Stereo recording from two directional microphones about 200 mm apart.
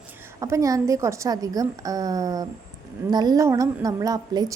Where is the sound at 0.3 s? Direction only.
15° right (ahead or behind).